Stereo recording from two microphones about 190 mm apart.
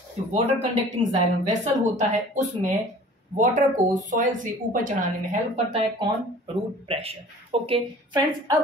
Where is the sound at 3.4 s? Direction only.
40° right (ahead or behind).